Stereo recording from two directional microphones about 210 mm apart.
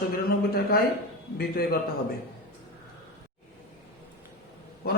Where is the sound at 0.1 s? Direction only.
45° left (ahead or behind).